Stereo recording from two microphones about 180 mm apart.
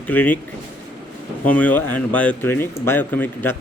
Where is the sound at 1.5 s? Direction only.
10° left (ahead or behind).